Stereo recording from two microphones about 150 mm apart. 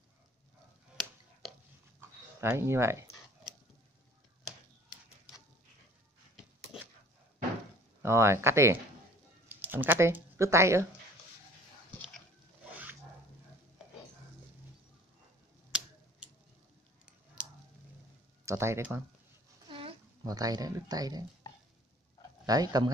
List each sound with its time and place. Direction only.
2.0 s dog: 15° right (ahead or behind)
8.0 s speech: 15° right (ahead or behind)
15.7 s tick: 5° right (ahead or behind)
17.4 s a sound: 5° right (ahead or behind)
18.4 s speech: 20° right (ahead or behind)
19.7 s a sound: 35° right (ahead or behind)
20.2 s speech: 25° right (ahead or behind)
22.5 s speech: 25° right (ahead or behind)